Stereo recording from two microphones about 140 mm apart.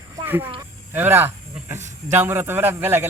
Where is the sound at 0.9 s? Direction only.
15° right (ahead or behind).